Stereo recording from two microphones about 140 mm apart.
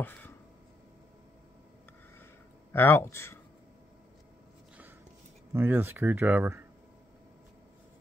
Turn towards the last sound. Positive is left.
turn(degrees=-15)  # may be behind; listen again after turning